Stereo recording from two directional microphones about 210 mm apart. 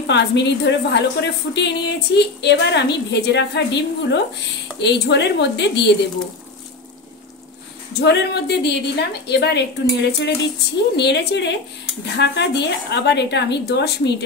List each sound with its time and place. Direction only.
0.0 s a woman's voice: 55° left (ahead or behind)
8.0 s a woman's voice: 55° left (ahead or behind)